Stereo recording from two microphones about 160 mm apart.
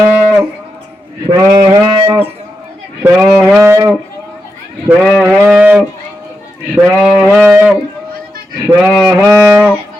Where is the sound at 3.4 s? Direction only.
15° right (ahead or behind).